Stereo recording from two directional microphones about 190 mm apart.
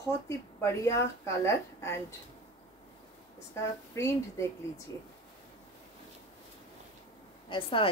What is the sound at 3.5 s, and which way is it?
Speech, 15° left (ahead or behind).